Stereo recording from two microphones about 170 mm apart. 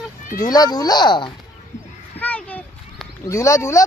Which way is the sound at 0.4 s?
20° left (ahead or behind).